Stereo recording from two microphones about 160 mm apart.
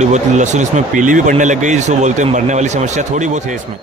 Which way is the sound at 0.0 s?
45° right (ahead or behind).